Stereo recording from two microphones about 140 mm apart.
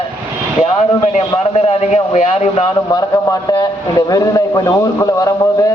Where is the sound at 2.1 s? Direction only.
55° left (ahead or behind).